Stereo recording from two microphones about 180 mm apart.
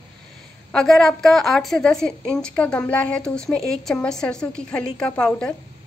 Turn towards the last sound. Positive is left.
turn(degrees=5)  # may be behind; listen again after turning